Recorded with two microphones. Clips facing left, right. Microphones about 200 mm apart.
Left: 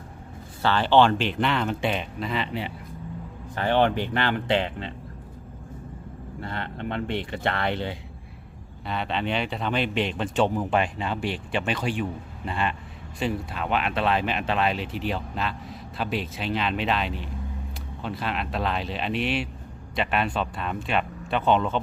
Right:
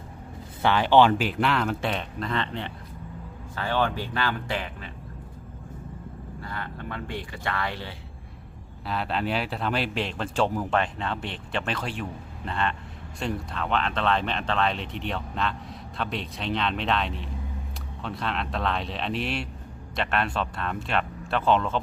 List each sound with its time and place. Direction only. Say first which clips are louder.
0.6 s speech: even; 10° right (ahead or behind); by 2.7 s 10° left (ahead or behind)
3.5 s speech: left 5 dB; 20° left (ahead or behind)
6.4 s speech: left 5 dB; 25° left (ahead or behind)
8.9 s speech: even; centre (ahead or behind)